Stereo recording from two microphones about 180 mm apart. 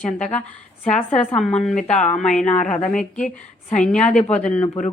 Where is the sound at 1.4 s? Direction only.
5° left (ahead or behind).